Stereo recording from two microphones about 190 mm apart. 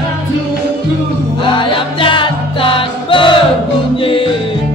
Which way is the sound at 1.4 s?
25° left (ahead or behind).